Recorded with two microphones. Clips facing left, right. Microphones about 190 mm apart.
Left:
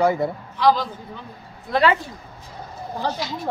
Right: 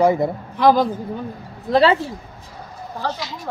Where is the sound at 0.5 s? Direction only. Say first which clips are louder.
Right 4 dB; 55° right (ahead or behind).